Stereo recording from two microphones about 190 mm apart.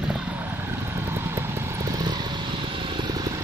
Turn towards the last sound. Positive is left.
turn(degrees=-20)  # may be behind; listen again after turning